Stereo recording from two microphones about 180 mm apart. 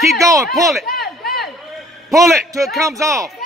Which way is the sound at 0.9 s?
60° left (ahead or behind).